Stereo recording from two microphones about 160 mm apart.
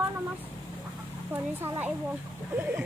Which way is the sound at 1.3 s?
15° right (ahead or behind).